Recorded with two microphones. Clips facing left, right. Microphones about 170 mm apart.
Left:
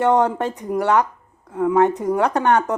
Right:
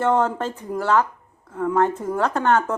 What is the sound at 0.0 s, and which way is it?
Speech, 20° left (ahead or behind).